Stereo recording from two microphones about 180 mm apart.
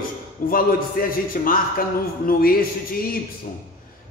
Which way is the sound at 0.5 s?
55° left (ahead or behind).